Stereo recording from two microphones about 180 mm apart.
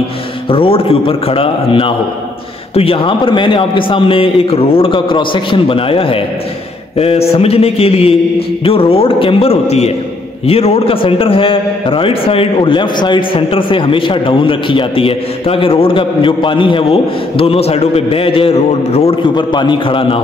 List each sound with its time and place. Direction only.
0.5 s mantra: 30° left (ahead or behind)
2.7 s a man's voice: 30° left (ahead or behind)
7.0 s mantra: 35° left (ahead or behind)
10.4 s a man's voice: 35° left (ahead or behind)